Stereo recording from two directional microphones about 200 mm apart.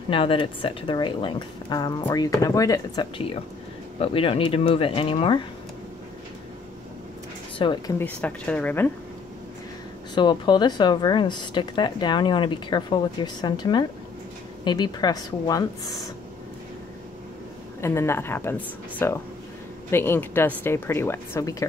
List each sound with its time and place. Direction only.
0.1 s speech: 25° left (ahead or behind)
7.5 s speech: 20° left (ahead or behind)
8.0 s a woman's voice: 5° left (ahead or behind)
10.1 s speech: 20° left (ahead or behind)
17.8 s a woman's voice: 15° left (ahead or behind)